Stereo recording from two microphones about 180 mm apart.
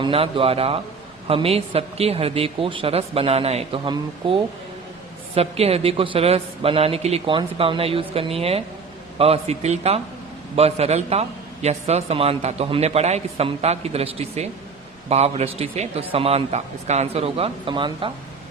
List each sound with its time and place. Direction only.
0.0 s a man's voice: 30° right (ahead or behind)